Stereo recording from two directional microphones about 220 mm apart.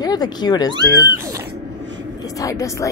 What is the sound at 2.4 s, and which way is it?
Speech, 15° left (ahead or behind).